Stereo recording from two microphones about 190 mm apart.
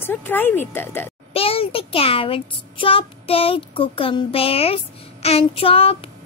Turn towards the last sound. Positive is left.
turn(degrees=30)  # may be behind; listen again after turning